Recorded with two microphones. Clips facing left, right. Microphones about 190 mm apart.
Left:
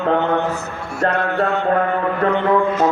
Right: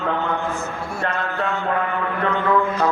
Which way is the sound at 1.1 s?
65° left (ahead or behind).